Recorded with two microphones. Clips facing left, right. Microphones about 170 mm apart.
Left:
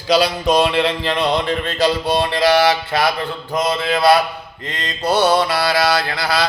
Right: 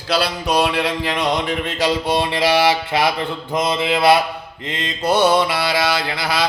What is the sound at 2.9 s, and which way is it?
Mantra, 15° right (ahead or behind).